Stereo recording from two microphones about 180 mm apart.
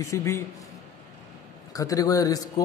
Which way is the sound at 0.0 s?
15° left (ahead or behind).